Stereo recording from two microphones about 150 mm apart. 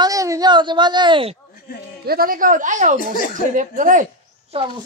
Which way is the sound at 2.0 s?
85° right.